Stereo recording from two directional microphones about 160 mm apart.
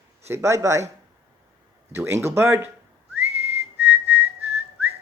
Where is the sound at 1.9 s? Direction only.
15° right (ahead or behind).